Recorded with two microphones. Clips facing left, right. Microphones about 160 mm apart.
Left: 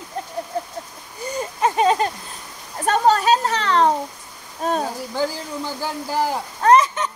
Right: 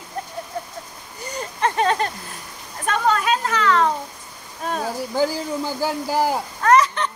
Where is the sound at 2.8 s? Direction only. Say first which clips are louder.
Left 4 dB; 35° left (ahead or behind).